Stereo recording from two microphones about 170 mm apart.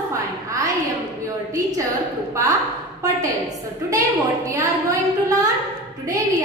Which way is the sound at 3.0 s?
20° right (ahead or behind).